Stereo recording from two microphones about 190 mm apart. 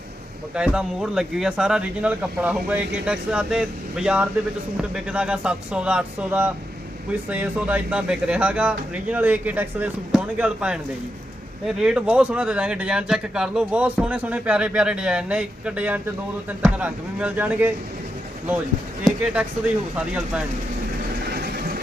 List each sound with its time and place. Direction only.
0.5 s speech: 5° right (ahead or behind)
19.0 s speech: 5° right (ahead or behind)
21.2 s vehicle: 55° right (ahead or behind)